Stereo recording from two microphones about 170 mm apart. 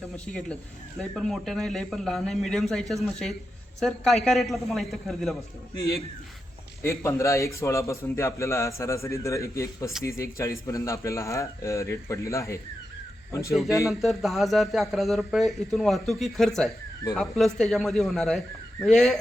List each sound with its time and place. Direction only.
0.9 s speech: centre (ahead or behind)
6.8 s a man's voice: 15° left (ahead or behind)
14.0 s speech: centre (ahead or behind)